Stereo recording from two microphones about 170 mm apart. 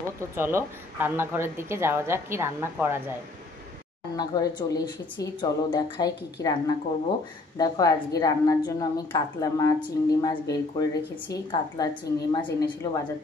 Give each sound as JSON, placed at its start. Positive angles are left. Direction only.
{"t": 0.4, "sound": "speech", "side_deg": -15}
{"t": 4.2, "sound": "a woman's voice", "side_deg": 25}
{"t": 7.5, "sound": "a woman's voice", "side_deg": 20}